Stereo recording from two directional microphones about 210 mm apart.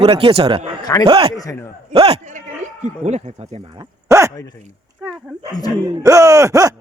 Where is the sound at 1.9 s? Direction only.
30° right (ahead or behind).